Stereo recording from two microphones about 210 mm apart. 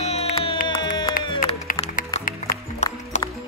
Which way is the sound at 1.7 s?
40° left (ahead or behind).